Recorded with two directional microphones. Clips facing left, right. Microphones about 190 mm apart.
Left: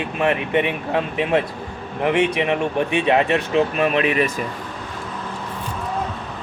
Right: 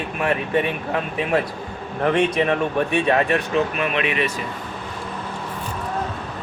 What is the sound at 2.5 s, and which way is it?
Speech, 20° left (ahead or behind).